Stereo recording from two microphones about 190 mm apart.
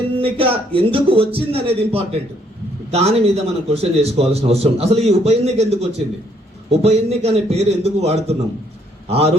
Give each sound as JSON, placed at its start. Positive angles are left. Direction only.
{"t": 0.2, "sound": "a man's voice", "side_deg": -30}